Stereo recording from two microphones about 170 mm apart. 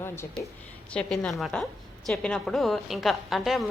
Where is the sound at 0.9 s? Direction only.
5° left (ahead or behind).